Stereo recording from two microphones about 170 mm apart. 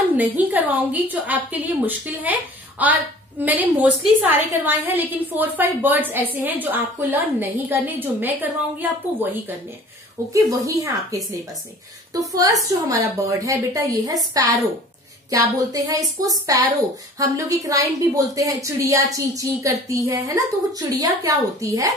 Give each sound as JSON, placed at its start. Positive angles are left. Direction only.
{"t": 0.1, "sound": "a woman's voice", "side_deg": -10}
{"t": 10.3, "sound": "a woman's voice", "side_deg": -20}